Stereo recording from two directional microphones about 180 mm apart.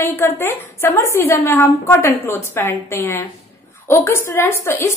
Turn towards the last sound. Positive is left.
turn(degrees=15)  # may be behind; listen again after turning